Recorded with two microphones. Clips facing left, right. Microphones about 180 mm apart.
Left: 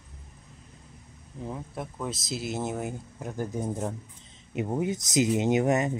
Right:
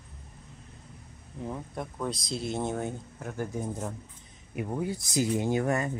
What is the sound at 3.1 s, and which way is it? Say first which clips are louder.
Speech: left 3 dB; 15° left (ahead or behind).